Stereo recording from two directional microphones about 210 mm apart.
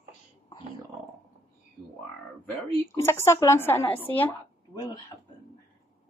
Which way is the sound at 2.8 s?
15° left (ahead or behind).